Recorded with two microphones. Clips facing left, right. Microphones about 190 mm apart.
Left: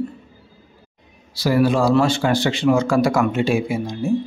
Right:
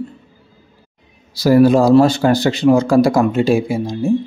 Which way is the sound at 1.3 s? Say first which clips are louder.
Right 7 dB; 40° right (ahead or behind).